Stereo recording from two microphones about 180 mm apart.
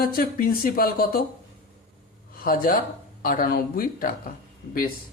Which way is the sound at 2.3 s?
50° left (ahead or behind).